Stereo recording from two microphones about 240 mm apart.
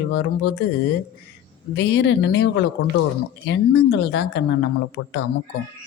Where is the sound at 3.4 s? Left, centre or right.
Left.